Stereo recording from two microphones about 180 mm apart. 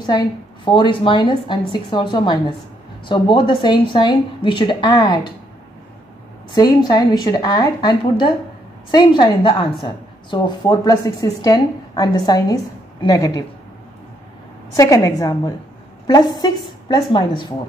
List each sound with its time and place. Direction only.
0.7 s a woman's voice: 25° left (ahead or behind)
6.5 s a woman's voice: 20° left (ahead or behind)
14.8 s a woman's voice: 20° left (ahead or behind)
16.8 s a woman's voice: 25° left (ahead or behind)